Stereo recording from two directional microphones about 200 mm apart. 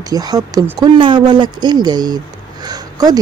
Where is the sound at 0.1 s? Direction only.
20° right (ahead or behind).